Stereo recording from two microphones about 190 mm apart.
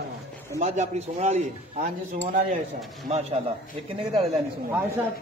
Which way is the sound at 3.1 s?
30° right (ahead or behind).